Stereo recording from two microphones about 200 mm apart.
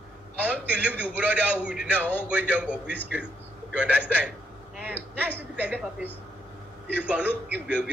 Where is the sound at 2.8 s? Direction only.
55° right (ahead or behind).